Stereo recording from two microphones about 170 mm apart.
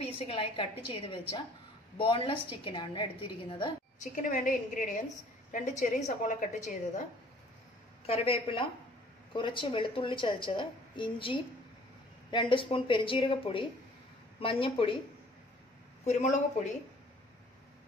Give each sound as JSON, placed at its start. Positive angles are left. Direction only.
{"t": 0.2, "sound": "a woman's voice", "side_deg": 35}
{"t": 4.1, "sound": "a woman's voice", "side_deg": 45}
{"t": 8.1, "sound": "a woman's voice", "side_deg": 35}
{"t": 16.1, "sound": "a woman's voice", "side_deg": 40}